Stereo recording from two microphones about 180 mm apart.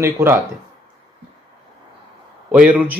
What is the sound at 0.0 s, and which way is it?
Speech, 15° right (ahead or behind).